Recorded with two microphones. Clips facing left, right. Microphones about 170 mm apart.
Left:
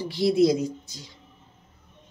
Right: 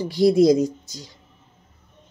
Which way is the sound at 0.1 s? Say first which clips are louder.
Right 5 dB; 40° right (ahead or behind).